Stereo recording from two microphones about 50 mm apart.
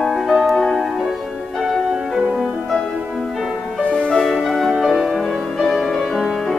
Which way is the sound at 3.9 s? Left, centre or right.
Centre.